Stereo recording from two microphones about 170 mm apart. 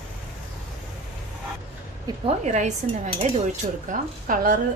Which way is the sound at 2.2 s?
45° right (ahead or behind).